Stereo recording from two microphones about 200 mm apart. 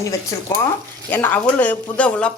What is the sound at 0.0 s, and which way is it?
Speech, 15° left (ahead or behind).